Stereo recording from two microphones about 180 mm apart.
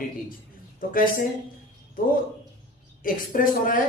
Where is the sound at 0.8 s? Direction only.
50° left (ahead or behind).